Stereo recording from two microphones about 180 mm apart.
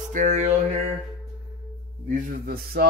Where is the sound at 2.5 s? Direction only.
60° right (ahead or behind).